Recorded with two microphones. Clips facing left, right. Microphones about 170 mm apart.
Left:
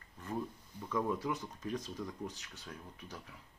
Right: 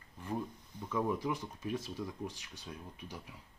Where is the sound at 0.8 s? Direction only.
10° right (ahead or behind).